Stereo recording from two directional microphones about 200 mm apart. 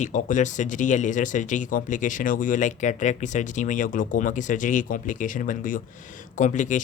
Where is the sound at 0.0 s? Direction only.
40° left (ahead or behind).